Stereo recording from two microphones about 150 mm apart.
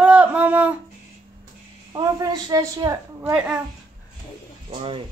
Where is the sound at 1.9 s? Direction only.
30° right (ahead or behind).